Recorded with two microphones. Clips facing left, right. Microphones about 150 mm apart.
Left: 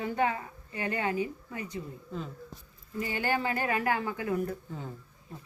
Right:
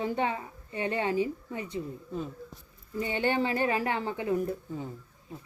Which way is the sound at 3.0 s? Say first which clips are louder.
Right 3 dB; 25° right (ahead or behind).